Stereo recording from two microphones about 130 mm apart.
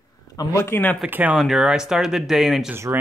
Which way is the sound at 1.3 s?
5° right (ahead or behind).